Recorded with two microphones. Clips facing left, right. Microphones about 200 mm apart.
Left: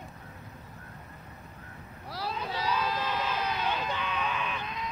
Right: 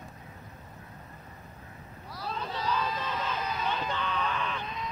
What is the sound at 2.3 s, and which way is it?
Crowd, 10° left (ahead or behind).